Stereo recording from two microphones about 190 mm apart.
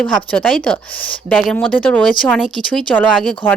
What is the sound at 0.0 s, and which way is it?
A woman's voice, centre (ahead or behind).